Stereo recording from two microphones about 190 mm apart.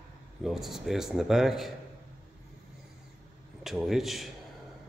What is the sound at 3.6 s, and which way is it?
Speech, centre (ahead or behind).